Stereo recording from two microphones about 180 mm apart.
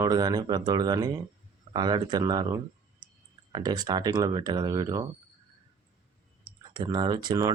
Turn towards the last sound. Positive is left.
turn(degrees=-20)  # may be behind; listen again after turning